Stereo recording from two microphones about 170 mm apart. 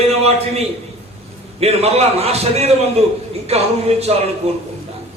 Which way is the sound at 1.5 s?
40° right (ahead or behind).